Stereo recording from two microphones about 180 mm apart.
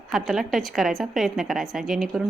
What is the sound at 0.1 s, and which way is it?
A woman's voice, centre (ahead or behind).